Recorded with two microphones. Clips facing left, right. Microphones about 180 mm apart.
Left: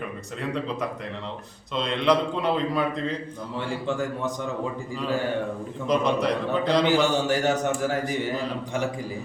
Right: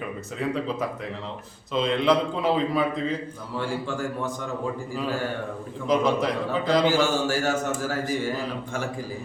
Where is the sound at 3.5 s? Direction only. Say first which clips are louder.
Even; 20° left (ahead or behind).